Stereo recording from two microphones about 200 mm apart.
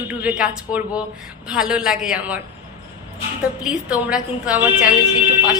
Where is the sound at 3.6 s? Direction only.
5° right (ahead or behind).